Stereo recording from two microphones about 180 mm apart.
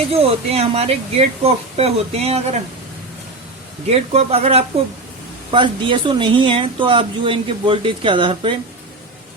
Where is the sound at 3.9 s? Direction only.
35° right (ahead or behind).